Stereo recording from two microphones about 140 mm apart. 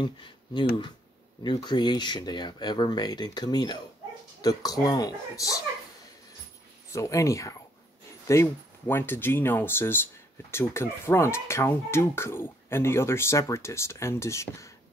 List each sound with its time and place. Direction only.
0.0 s speech: 35° left (ahead or behind)
6.9 s speech: 20° left (ahead or behind)